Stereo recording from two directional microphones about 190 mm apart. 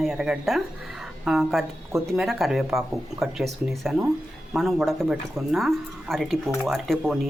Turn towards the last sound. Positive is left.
turn(degrees=0)  # may be behind; listen again after turning